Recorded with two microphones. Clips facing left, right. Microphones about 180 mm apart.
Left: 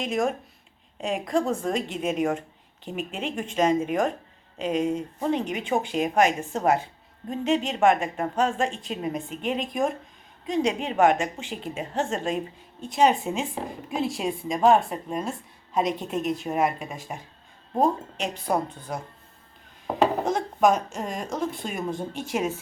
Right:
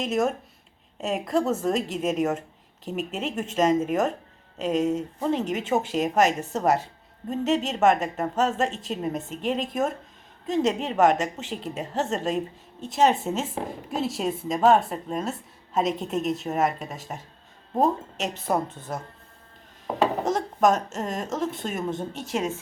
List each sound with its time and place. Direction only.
0.0 s a woman's voice: centre (ahead or behind)
19.9 s a woman's voice: centre (ahead or behind)